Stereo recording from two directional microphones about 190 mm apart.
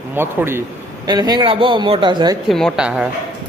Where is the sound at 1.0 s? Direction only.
20° right (ahead or behind).